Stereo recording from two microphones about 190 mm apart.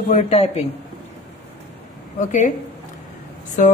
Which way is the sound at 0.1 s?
35° left (ahead or behind).